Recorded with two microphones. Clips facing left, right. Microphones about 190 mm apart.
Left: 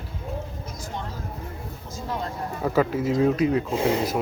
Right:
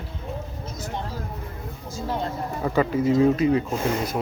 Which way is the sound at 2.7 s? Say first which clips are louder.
Right 1 dB; centre (ahead or behind).